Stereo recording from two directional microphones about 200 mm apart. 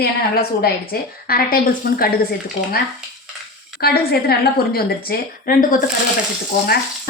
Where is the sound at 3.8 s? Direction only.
50° left (ahead or behind).